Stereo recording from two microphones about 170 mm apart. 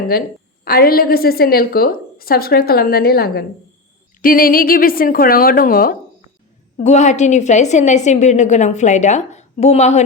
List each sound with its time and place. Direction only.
0.1 s a woman's voice: 60° left (ahead or behind)
6.7 s a woman's voice: 45° left (ahead or behind)